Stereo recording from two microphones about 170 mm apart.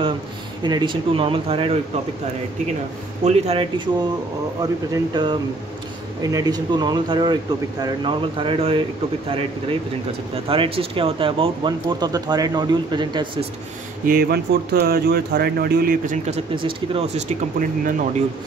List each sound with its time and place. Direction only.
0.7 s speech: 25° right (ahead or behind)
3.3 s speech: 40° right (ahead or behind)
5.1 s speech: 30° right (ahead or behind)
14.0 s speech: 60° right (ahead or behind)
16.3 s speech: 30° right (ahead or behind); by 18.0 s 50° right (ahead or behind)